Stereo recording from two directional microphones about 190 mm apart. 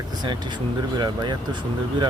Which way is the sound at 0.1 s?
20° right (ahead or behind).